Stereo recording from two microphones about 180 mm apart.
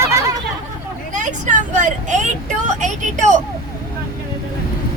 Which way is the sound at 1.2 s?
45° right (ahead or behind).